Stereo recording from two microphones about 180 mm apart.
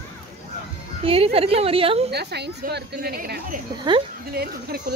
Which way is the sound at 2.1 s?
65° right (ahead or behind).